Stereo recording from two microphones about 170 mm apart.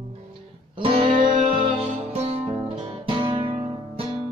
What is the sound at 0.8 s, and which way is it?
Music, 30° right (ahead or behind).